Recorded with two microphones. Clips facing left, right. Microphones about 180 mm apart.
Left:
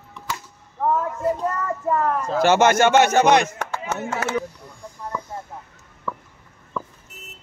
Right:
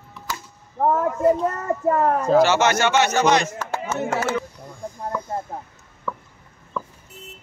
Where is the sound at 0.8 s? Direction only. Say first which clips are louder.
Right 2 dB; 45° right (ahead or behind).